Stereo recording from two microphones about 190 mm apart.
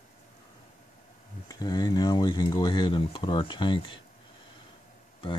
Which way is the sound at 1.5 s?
20° left (ahead or behind).